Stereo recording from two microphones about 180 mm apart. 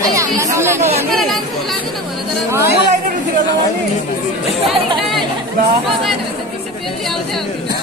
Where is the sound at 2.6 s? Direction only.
60° left (ahead or behind).